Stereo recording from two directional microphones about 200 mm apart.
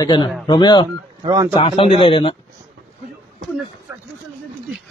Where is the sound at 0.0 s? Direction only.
20° left (ahead or behind).